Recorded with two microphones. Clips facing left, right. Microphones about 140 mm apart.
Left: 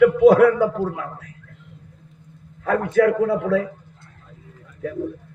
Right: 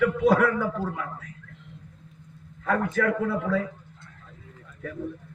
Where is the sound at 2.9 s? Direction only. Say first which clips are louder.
Left 8 dB; 65° left (ahead or behind).